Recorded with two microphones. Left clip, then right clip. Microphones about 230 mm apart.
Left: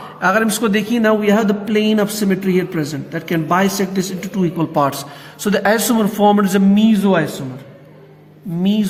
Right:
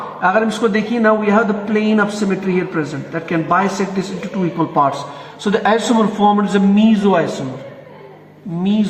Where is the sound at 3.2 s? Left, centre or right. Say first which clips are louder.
Right 1 dB; left.